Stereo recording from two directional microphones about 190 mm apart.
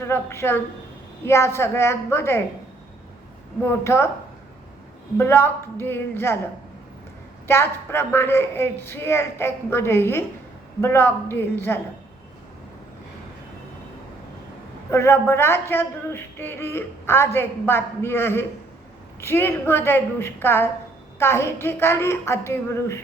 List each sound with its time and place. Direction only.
0.0 s speech: 15° left (ahead or behind)
3.7 s speech: 15° left (ahead or behind)
5.1 s speech: 10° left (ahead or behind)
7.4 s speech: 10° left (ahead or behind)
14.8 s speech: 15° left (ahead or behind)